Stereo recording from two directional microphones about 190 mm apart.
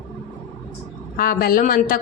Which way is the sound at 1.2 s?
50° left (ahead or behind).